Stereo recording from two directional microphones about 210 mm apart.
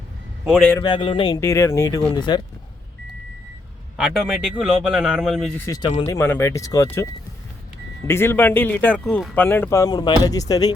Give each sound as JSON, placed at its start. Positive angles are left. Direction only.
{"t": 0.4, "sound": "speech", "side_deg": 0}
{"t": 0.7, "sound": "a man's voice", "side_deg": 20}
{"t": 3.9, "sound": "speech", "side_deg": 0}
{"t": 5.6, "sound": "a man's voice", "side_deg": 15}